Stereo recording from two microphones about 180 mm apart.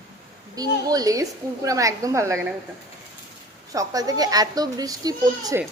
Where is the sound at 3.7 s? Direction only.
20° right (ahead or behind).